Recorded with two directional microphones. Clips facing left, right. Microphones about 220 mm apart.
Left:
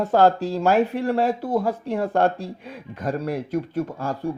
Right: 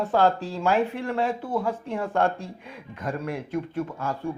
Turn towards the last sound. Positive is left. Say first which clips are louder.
# left 3 dB
turn(degrees=35)  # may be behind; listen again after turning